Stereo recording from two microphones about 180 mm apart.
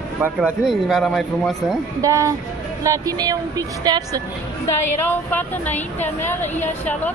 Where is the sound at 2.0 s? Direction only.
15° right (ahead or behind).